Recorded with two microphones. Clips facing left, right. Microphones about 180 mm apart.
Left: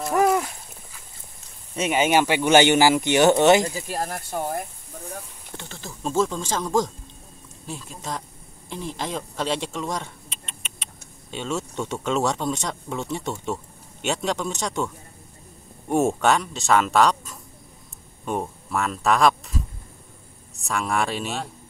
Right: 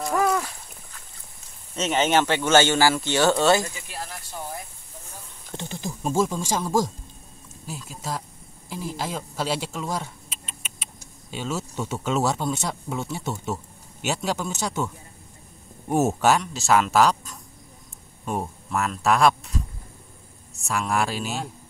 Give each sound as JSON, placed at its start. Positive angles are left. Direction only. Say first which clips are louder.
{"t": 0.1, "sound": "splash", "louder": "left 3 dB", "side_deg": 20}
{"t": 1.8, "sound": "speech", "louder": "left 1 dB", "side_deg": 10}
{"t": 3.6, "sound": "speech", "louder": "left 8 dB", "side_deg": 40}
{"t": 5.5, "sound": "speech", "louder": "right 7 dB", "side_deg": -15}
{"t": 15.9, "sound": "speech", "louder": "even", "side_deg": -5}